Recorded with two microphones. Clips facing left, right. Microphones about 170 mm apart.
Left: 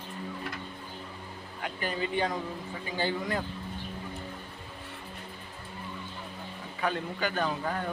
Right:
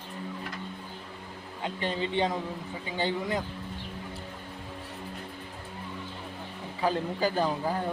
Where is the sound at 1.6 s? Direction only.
25° right (ahead or behind).